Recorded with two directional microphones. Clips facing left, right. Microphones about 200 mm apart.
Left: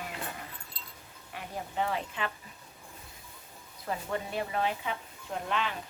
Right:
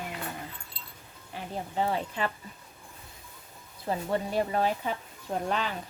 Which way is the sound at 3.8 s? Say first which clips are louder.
Right 5 dB; 30° right (ahead or behind).